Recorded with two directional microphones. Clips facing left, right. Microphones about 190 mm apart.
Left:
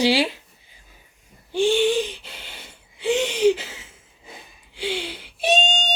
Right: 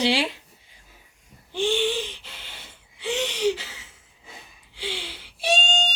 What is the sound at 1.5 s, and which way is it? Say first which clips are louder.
Wheeze: left 5 dB; 15° left (ahead or behind).